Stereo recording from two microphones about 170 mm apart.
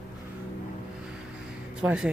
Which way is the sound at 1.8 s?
5° right (ahead or behind).